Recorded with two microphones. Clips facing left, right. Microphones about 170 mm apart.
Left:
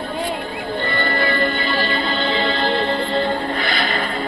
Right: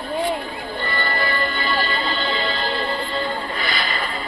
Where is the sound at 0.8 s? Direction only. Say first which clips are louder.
Left 3 dB; 50° left (ahead or behind).